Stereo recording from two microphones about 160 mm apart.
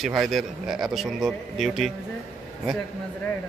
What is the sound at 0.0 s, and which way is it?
Speech, centre (ahead or behind).